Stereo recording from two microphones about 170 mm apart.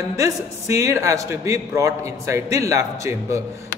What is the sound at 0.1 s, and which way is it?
A man's voice, 15° right (ahead or behind).